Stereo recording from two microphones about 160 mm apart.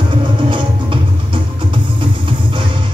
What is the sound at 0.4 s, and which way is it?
Music, 30° right (ahead or behind).